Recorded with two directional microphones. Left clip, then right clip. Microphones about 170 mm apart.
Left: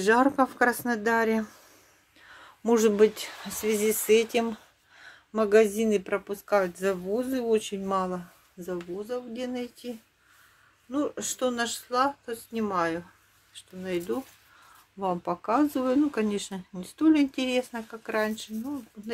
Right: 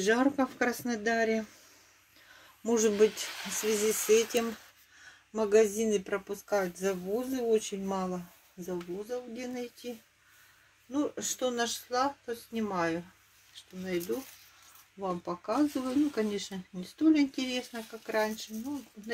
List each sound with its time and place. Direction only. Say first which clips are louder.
0.0 s speech: left 6 dB; 5° left (ahead or behind)
2.6 s speech: left 4 dB; 15° left (ahead or behind)